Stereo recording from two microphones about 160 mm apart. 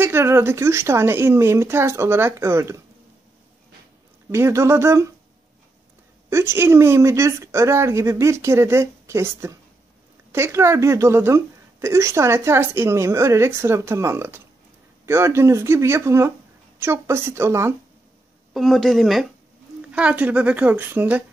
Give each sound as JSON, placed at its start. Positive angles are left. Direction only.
{"t": 0.0, "sound": "speech", "side_deg": -15}
{"t": 4.3, "sound": "speech", "side_deg": -15}
{"t": 6.3, "sound": "speech", "side_deg": -15}
{"t": 18.5, "sound": "speech", "side_deg": 0}